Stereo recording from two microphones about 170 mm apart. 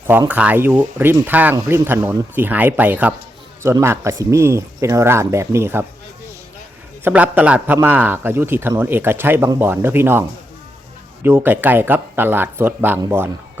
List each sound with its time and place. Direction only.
0.1 s a man's voice: 10° right (ahead or behind)
7.0 s a man's voice: 10° right (ahead or behind)